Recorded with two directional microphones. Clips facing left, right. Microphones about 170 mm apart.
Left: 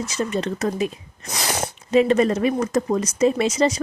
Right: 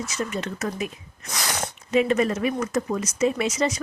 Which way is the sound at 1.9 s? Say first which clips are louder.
Left 4 dB; 35° left (ahead or behind).